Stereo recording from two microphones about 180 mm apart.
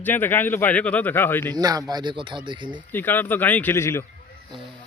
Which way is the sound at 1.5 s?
20° right (ahead or behind).